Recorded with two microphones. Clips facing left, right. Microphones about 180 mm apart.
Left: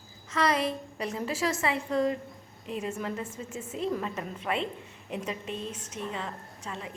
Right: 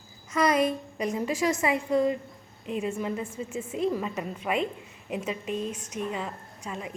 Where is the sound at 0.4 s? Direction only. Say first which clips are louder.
Right 4 dB; 20° right (ahead or behind).